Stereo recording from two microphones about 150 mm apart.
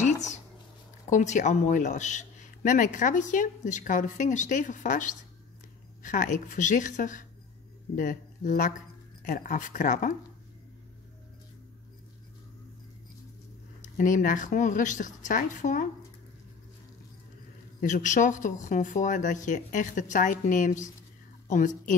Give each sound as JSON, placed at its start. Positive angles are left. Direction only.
{"t": 0.0, "sound": "a sound", "side_deg": 50}
{"t": 1.1, "sound": "a man's voice", "side_deg": 55}
{"t": 13.7, "sound": "a man's voice", "side_deg": 60}
{"t": 17.7, "sound": "a man's voice", "side_deg": 60}